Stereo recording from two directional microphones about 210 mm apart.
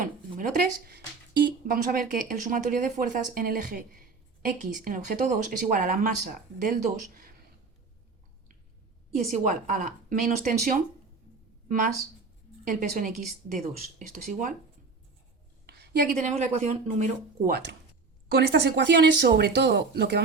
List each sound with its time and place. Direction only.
0.0 s a woman's voice: 40° right (ahead or behind)
9.1 s speech: 35° right (ahead or behind)
12.6 s speech: 40° right (ahead or behind)
15.6 s a sound: 50° right (ahead or behind)
16.1 s speech: 35° right (ahead or behind)
18.3 s speech: 50° right (ahead or behind)